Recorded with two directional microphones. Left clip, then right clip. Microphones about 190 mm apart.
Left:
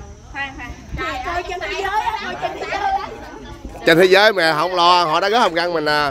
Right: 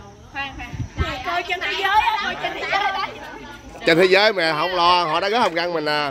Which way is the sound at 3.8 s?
5° left (ahead or behind).